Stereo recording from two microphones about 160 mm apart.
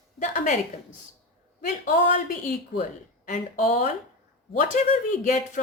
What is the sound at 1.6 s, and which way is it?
A woman's voice, 55° left (ahead or behind).